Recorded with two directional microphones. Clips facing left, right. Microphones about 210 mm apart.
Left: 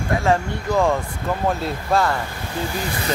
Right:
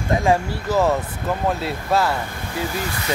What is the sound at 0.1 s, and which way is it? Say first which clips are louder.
Speech: right 1 dB; 15° right (ahead or behind).